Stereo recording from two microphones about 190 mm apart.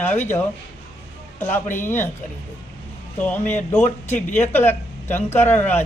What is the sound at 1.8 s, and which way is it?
Speech, 10° left (ahead or behind).